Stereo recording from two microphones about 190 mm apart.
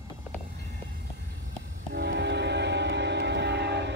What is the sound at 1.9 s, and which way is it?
Train, 60° right (ahead or behind).